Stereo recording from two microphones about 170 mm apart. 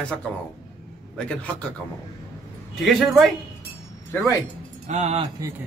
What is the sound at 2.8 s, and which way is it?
Speech, centre (ahead or behind).